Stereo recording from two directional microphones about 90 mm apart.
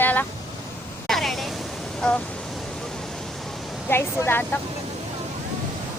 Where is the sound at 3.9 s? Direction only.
25° left (ahead or behind).